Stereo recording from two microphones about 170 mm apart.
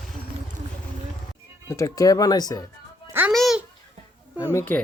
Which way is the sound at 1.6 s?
20° left (ahead or behind).